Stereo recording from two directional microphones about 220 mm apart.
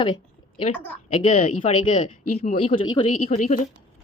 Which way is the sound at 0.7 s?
5° left (ahead or behind).